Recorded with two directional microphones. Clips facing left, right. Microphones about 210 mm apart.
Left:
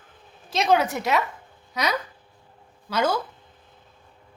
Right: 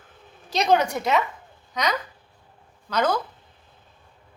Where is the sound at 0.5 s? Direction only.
Centre (ahead or behind).